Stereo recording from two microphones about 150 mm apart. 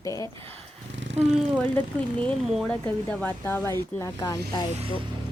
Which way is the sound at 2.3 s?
5° left (ahead or behind).